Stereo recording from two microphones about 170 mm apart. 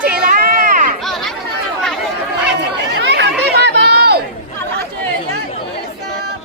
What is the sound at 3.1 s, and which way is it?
Chatter, 90° right.